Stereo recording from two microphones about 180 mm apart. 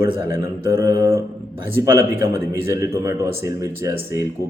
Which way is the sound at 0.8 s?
20° right (ahead or behind).